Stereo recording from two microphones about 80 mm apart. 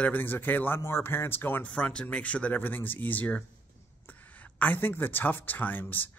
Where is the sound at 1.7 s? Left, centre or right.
Centre.